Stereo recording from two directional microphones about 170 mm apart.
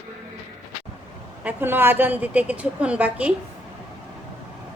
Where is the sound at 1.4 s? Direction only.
10° right (ahead or behind).